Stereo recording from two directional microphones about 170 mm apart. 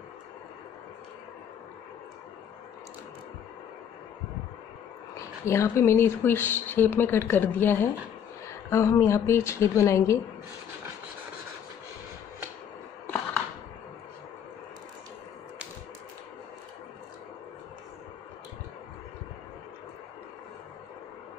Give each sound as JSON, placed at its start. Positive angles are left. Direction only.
{"t": 5.1, "sound": "speech", "side_deg": 15}